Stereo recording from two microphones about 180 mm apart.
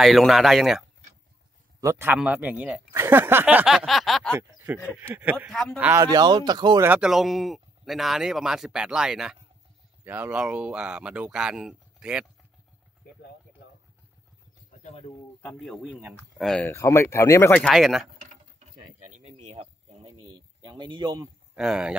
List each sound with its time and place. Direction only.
0.0 s speech: centre (ahead or behind)
1.8 s speech: 15° right (ahead or behind); by 4.4 s 5° left (ahead or behind)
4.9 s speech: 10° right (ahead or behind)
5.5 s speech: centre (ahead or behind)
5.8 s speech: 10° right (ahead or behind)
6.0 s speech: 20° right (ahead or behind)
6.8 s speech: 5° right (ahead or behind)
14.8 s bird: 40° left (ahead or behind)
15.4 s speech: centre (ahead or behind)
16.7 s speech: 15° left (ahead or behind); by 18.1 s centre (ahead or behind)
19.0 s a sound: 40° right (ahead or behind); by 21.3 s 25° right (ahead or behind)
21.5 s speech: 5° right (ahead or behind)